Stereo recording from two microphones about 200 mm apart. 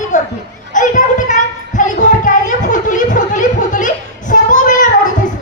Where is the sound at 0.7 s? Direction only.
40° left (ahead or behind).